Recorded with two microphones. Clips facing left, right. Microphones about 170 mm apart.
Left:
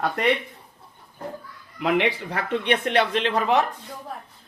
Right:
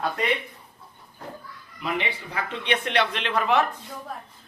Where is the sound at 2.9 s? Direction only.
35° left (ahead or behind).